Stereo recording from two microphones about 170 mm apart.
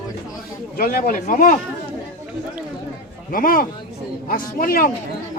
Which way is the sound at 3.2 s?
55° left (ahead or behind).